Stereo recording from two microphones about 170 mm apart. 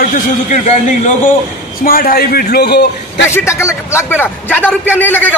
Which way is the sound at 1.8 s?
60° left (ahead or behind).